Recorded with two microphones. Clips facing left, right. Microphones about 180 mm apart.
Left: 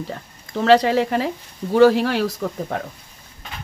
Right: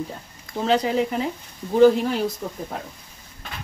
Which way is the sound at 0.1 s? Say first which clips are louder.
Left 4 dB; 75° left (ahead or behind).